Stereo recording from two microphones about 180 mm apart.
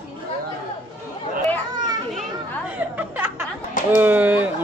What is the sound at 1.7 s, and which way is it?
Children playing, 25° right (ahead or behind).